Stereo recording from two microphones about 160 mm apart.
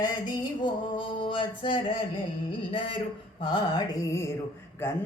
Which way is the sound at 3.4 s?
30° left (ahead or behind).